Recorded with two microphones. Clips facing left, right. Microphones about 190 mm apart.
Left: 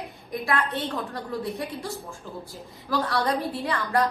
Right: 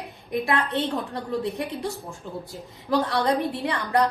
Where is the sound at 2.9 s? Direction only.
20° right (ahead or behind).